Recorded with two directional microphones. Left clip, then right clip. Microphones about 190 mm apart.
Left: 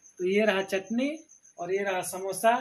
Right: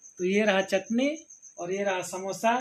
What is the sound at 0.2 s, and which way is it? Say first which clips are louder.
Speech: right 1 dB; 25° right (ahead or behind).